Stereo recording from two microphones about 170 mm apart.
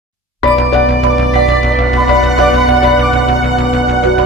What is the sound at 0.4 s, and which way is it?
Music, centre (ahead or behind).